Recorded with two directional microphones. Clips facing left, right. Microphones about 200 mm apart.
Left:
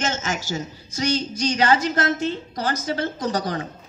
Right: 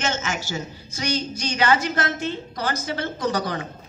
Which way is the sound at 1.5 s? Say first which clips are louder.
Even; 35° left (ahead or behind).